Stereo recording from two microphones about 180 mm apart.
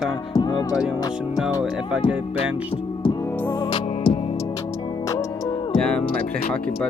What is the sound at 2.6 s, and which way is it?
Music, 30° left (ahead or behind).